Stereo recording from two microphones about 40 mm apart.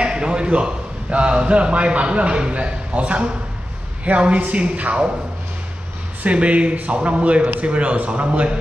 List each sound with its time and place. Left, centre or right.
0.0 s a man's voice: right
6.2 s speech: right